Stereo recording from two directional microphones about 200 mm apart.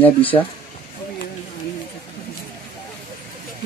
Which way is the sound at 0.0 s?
10° left (ahead or behind).